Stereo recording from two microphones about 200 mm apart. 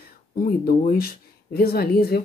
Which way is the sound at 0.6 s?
50° left (ahead or behind).